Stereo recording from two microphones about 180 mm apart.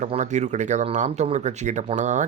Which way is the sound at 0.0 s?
40° right (ahead or behind).